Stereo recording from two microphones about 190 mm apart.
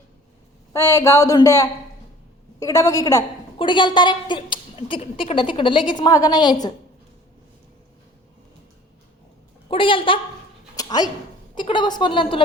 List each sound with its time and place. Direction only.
0.7 s a woman's voice: 15° left (ahead or behind)
9.6 s a woman's voice: 25° left (ahead or behind)
10.8 s a sound: 20° left (ahead or behind)
11.5 s a woman's voice: 25° left (ahead or behind)